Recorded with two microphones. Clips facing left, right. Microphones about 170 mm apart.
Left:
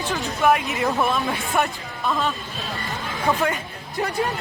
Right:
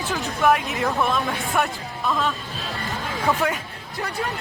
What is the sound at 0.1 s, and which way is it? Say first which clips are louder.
Speech: even; centre (ahead or behind).